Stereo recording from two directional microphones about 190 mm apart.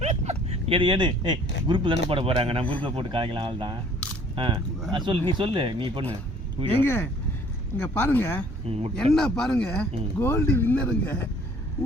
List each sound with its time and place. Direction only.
0.0 s a sound: 35° right (ahead or behind)
1.6 s speech: 25° right (ahead or behind)
6.7 s speech: 10° left (ahead or behind)
8.7 s speech: 30° right (ahead or behind)
9.1 s speech: 5° left (ahead or behind)